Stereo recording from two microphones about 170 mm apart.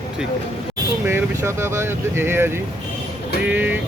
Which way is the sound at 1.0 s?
15° right (ahead or behind).